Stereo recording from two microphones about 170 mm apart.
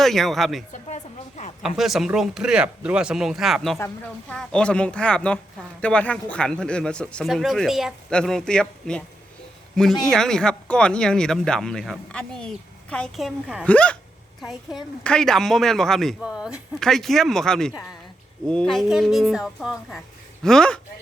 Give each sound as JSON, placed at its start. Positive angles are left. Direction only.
{"t": 0.0, "sound": "speech", "side_deg": 0}
{"t": 0.7, "sound": "a woman's voice", "side_deg": 45}
{"t": 1.6, "sound": "speech", "side_deg": 0}